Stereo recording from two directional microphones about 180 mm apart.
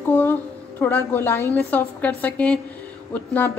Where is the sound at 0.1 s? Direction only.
10° left (ahead or behind).